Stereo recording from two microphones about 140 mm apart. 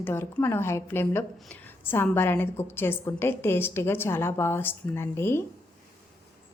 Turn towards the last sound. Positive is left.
turn(degrees=15)  # may be behind; listen again after turning